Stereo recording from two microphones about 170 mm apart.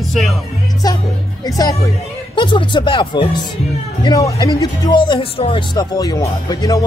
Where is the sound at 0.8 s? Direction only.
20° left (ahead or behind).